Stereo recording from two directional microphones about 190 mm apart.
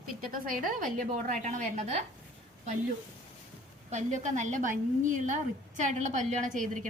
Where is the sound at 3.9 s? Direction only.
40° right (ahead or behind).